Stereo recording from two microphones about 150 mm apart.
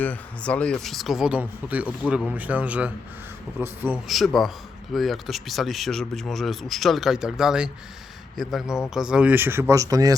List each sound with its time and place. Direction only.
0.0 s speech: 10° left (ahead or behind); by 4.0 s 10° right (ahead or behind)
4.0 s speech: centre (ahead or behind); by 10.2 s 25° right (ahead or behind)